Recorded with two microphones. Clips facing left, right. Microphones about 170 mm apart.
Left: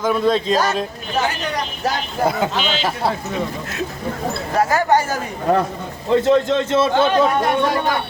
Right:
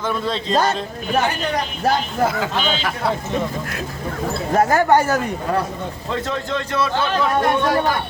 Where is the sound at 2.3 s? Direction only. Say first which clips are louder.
Left 2 dB; 25° left (ahead or behind).